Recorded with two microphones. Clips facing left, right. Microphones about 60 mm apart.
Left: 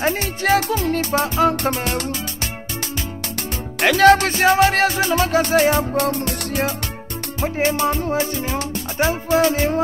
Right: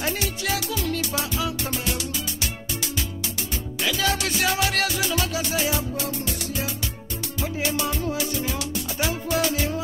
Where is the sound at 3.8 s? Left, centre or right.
Left.